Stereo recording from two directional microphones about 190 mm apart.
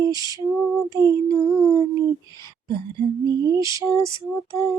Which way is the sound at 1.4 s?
20° right (ahead or behind).